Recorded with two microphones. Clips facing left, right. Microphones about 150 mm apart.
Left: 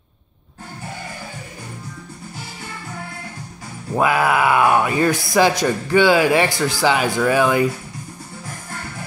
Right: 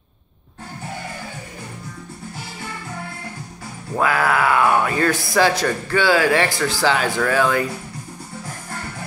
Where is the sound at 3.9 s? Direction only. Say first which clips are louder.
Left 2 dB; 15° left (ahead or behind).